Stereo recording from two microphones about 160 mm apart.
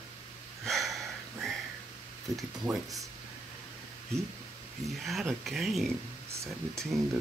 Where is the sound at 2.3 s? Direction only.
20° right (ahead or behind).